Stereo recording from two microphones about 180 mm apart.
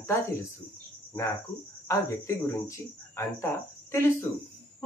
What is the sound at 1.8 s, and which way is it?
Speech, 15° left (ahead or behind).